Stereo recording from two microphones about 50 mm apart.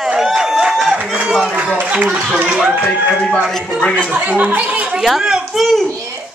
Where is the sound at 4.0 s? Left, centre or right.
Right.